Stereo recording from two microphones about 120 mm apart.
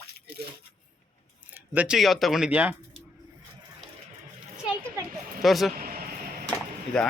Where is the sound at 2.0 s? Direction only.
Centre (ahead or behind).